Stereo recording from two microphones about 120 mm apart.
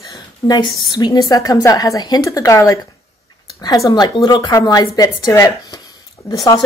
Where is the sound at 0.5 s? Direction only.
35° left (ahead or behind).